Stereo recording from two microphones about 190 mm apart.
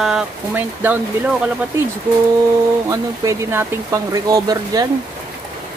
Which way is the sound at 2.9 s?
15° right (ahead or behind).